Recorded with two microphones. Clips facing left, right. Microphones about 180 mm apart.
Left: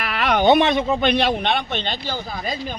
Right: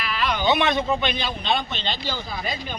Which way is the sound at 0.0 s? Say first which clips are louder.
Left 6 dB; 60° left (ahead or behind).